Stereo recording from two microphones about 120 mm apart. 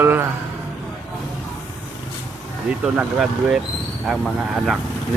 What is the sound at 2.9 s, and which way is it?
Speech, 5° right (ahead or behind).